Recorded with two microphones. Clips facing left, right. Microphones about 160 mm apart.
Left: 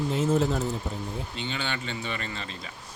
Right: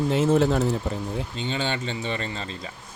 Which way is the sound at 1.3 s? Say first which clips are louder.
Right 5 dB; 35° right (ahead or behind).